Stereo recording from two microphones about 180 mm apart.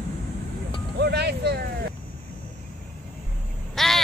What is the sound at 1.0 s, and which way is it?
Speech, 65° right (ahead or behind).